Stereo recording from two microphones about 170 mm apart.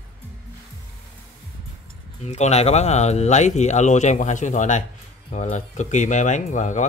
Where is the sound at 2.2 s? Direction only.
40° left (ahead or behind).